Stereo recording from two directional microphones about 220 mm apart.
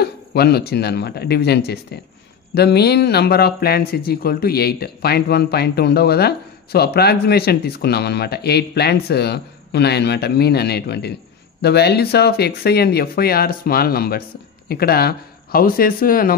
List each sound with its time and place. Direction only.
0.0 s speech: 45° left (ahead or behind)